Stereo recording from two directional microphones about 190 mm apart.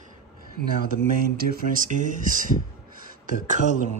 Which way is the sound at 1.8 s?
45° right (ahead or behind).